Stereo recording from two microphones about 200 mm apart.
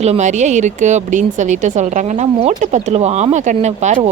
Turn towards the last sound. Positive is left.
turn(degrees=-35)  # may be behind; listen again after turning